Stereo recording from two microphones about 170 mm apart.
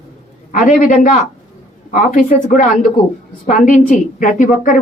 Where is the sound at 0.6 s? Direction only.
50° left (ahead or behind).